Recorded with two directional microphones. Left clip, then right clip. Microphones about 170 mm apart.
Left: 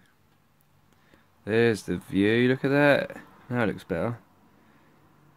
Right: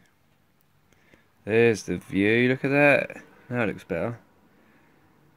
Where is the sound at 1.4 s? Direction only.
Centre (ahead or behind); by 4.2 s 20° left (ahead or behind).